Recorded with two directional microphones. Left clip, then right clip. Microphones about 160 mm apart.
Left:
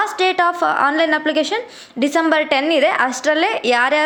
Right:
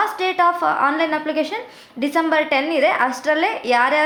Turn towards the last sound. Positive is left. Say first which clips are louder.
# left 2 dB
turn(degrees=30)  # may be behind; listen again after turning